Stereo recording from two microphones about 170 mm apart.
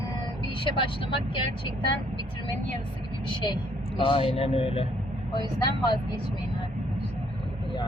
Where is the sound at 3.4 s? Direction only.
30° left (ahead or behind).